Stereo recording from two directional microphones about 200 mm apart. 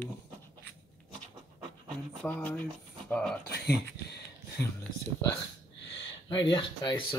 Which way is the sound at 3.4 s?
55° left (ahead or behind).